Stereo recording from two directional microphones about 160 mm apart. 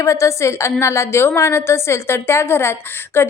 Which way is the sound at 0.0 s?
20° left (ahead or behind).